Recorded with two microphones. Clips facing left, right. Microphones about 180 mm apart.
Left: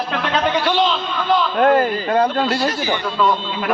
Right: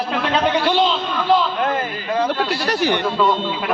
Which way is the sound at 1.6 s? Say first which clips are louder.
Left 7 dB; 60° left (ahead or behind).